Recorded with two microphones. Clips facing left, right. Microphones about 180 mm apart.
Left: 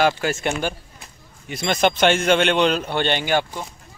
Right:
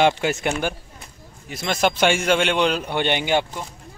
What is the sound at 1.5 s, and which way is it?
Speech, 5° right (ahead or behind).